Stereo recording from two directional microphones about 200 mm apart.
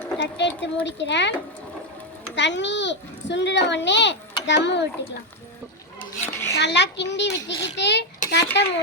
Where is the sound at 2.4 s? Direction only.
60° left (ahead or behind).